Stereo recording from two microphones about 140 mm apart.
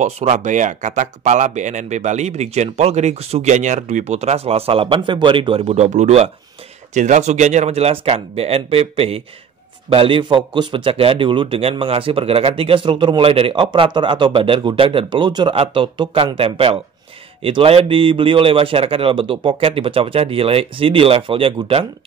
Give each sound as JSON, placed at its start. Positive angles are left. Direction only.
{"t": 0.0, "sound": "a man's voice", "side_deg": -55}